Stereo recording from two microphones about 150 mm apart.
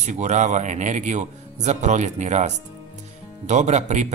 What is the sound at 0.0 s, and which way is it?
Speech, 50° right (ahead or behind).